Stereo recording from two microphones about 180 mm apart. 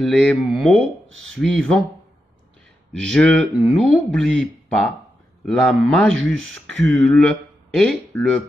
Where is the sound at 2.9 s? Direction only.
5° left (ahead or behind).